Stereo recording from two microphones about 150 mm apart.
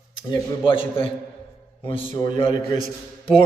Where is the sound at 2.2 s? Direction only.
30° left (ahead or behind).